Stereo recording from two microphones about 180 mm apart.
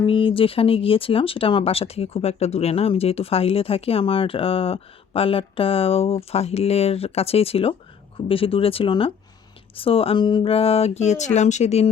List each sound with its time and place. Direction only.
0.0 s speech: 30° left (ahead or behind)